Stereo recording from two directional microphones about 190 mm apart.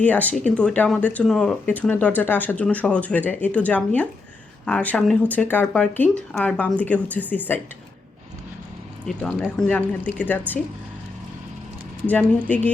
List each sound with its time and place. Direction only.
0.0 s speech: 10° left (ahead or behind)
9.0 s speech: centre (ahead or behind)
12.0 s speech: 10° left (ahead or behind)